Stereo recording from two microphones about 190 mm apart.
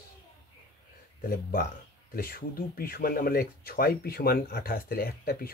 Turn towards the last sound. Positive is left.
turn(degrees=50)  # may be behind; listen again after turning